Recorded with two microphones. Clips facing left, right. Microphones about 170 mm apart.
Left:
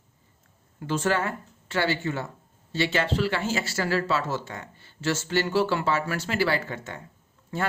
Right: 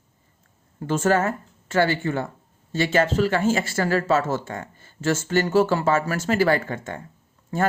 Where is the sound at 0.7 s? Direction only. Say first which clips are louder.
Right 5 dB; 45° right (ahead or behind).